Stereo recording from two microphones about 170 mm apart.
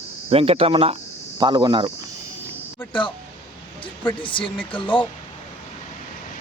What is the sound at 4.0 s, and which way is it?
Speech, 30° left (ahead or behind).